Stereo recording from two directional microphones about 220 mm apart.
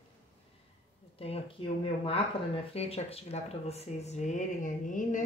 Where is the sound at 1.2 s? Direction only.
25° left (ahead or behind).